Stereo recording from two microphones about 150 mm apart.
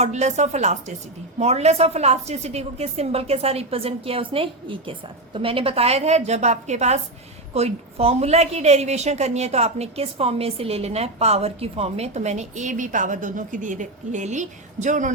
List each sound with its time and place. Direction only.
0.0 s a woman's voice: 50° right (ahead or behind)